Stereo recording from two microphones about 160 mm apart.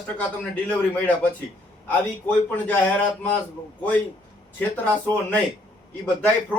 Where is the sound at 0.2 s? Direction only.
10° left (ahead or behind).